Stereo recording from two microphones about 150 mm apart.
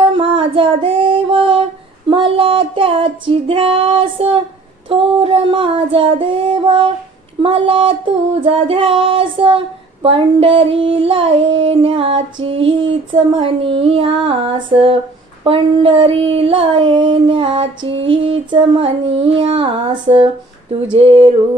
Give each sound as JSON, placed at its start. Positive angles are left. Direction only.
{"t": 0.0, "sound": "music", "side_deg": -35}
{"t": 2.0, "sound": "female singing", "side_deg": -35}
{"t": 4.8, "sound": "child singing", "side_deg": -35}